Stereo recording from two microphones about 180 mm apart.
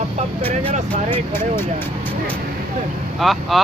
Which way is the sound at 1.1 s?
15° left (ahead or behind).